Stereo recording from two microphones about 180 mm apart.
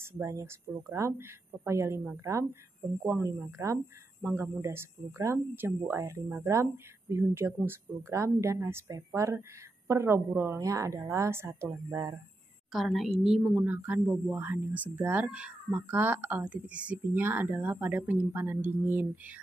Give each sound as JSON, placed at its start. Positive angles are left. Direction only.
{"t": 0.0, "sound": "speech", "side_deg": -15}
{"t": 12.7, "sound": "a woman's voice", "side_deg": 0}